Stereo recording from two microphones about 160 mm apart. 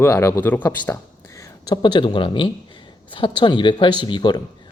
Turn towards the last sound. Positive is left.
turn(degrees=25)  # may be behind; listen again after turning